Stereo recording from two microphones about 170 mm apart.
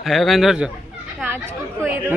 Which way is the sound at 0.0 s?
Centre (ahead or behind).